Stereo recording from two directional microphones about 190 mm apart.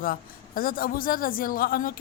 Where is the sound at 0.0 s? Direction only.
50° left (ahead or behind).